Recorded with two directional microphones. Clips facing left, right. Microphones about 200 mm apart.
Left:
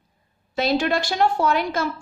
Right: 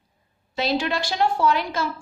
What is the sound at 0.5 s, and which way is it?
A woman's voice, 50° left (ahead or behind).